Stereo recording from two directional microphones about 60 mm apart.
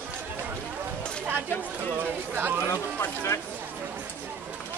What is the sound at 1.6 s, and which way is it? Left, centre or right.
Speech, right.